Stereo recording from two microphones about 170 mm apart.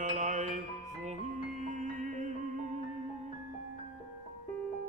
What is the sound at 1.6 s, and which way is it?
Music, 45° right (ahead or behind).